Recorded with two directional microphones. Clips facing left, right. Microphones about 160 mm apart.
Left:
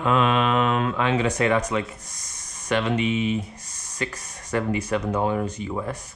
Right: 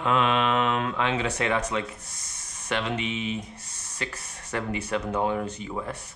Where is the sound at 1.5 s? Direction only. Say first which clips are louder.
Left 4 dB; 10° left (ahead or behind).